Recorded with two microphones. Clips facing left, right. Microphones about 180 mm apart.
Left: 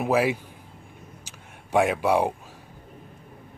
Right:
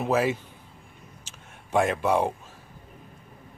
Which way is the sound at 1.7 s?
10° left (ahead or behind).